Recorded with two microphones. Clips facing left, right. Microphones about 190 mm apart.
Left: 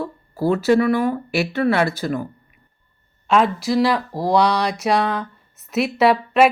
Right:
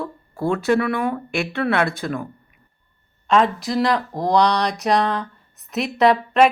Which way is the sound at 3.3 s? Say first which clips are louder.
Left 1 dB; 5° left (ahead or behind).